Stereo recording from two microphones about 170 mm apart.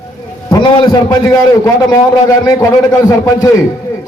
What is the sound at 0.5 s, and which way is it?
A man's voice, 25° left (ahead or behind).